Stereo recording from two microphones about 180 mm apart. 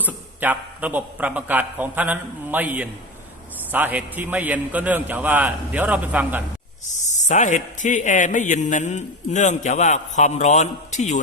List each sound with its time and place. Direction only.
0.0 s a man's voice: 10° right (ahead or behind)
6.8 s a man's voice: 40° left (ahead or behind)